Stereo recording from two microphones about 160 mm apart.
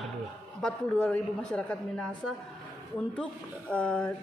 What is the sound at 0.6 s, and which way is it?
A woman's voice, 5° left (ahead or behind).